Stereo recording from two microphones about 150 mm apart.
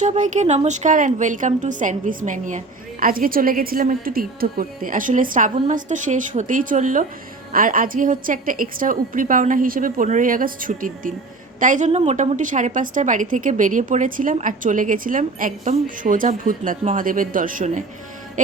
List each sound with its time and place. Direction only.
0.0 s a woman's voice: 50° right (ahead or behind)
11.9 s a woman's voice: 50° right (ahead or behind)